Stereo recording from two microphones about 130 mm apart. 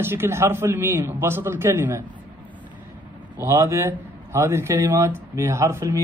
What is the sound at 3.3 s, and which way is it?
A man's voice, 25° right (ahead or behind).